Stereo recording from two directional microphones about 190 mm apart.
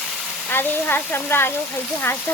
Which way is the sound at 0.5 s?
10° left (ahead or behind).